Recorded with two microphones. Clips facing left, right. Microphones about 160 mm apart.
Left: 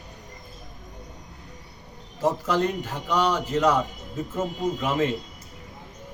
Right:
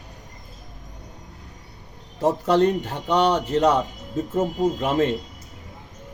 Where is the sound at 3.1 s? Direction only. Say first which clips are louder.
Right 4 dB; 30° right (ahead or behind).